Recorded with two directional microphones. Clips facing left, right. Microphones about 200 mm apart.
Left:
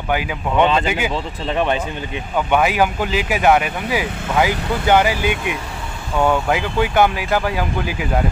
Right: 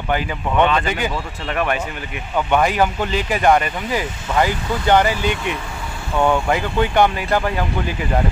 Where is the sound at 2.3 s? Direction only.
5° left (ahead or behind).